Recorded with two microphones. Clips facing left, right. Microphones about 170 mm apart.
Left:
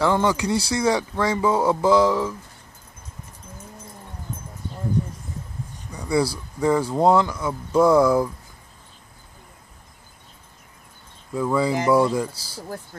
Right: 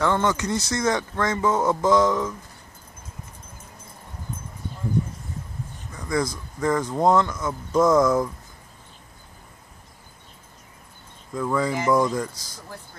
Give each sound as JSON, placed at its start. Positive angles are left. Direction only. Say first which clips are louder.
{"t": 0.0, "sound": "speech", "louder": "left 2 dB", "side_deg": 10}
{"t": 5.9, "sound": "a sound", "louder": "left 3 dB", "side_deg": 10}
{"t": 6.6, "sound": "speech", "louder": "left 2 dB", "side_deg": 10}
{"t": 11.3, "sound": "speech", "louder": "left 3 dB", "side_deg": 10}
{"t": 12.3, "sound": "speech", "louder": "left 6 dB", "side_deg": 30}